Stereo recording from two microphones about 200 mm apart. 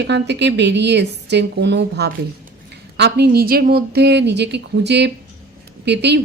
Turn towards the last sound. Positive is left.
turn(degrees=-60)  # may be behind; listen again after turning